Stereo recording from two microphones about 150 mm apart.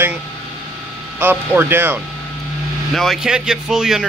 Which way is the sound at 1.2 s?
15° right (ahead or behind).